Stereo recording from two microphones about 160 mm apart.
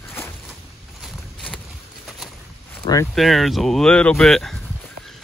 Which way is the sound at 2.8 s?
25° left (ahead or behind).